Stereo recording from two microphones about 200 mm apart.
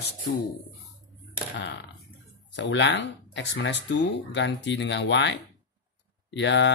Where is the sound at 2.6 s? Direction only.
60° left (ahead or behind).